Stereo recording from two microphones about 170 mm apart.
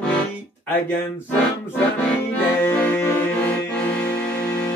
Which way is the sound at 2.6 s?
10° left (ahead or behind).